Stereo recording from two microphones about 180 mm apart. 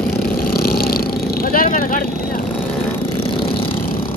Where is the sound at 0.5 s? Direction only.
55° left (ahead or behind).